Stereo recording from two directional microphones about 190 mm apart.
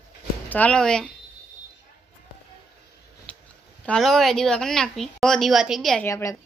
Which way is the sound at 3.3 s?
5° left (ahead or behind).